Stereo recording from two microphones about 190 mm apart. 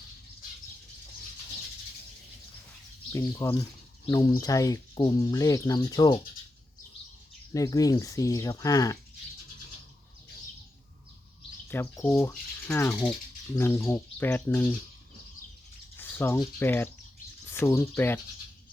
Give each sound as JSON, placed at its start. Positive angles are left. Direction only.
{"t": 3.1, "sound": "speech", "side_deg": 15}
{"t": 7.5, "sound": "speech", "side_deg": 20}
{"t": 11.7, "sound": "speech", "side_deg": 10}
{"t": 16.0, "sound": "bird", "side_deg": 10}
{"t": 16.6, "sound": "speech", "side_deg": 10}